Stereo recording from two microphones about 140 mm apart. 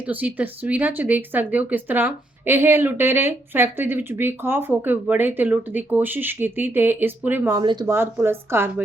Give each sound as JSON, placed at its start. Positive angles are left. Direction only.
{"t": 0.0, "sound": "speech", "side_deg": -10}
{"t": 7.5, "sound": "speech", "side_deg": -30}
{"t": 7.9, "sound": "speech", "side_deg": -15}